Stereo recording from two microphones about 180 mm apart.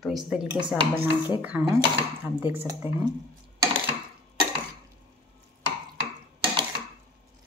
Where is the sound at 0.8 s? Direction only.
30° right (ahead or behind).